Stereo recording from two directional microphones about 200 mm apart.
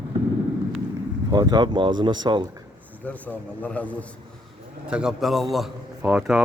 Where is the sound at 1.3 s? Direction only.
20° right (ahead or behind).